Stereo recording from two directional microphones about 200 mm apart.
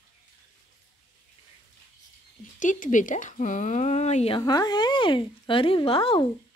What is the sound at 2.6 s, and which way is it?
A woman's voice, 40° left (ahead or behind).